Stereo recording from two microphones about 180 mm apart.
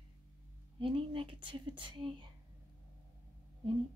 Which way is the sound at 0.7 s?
30° right (ahead or behind).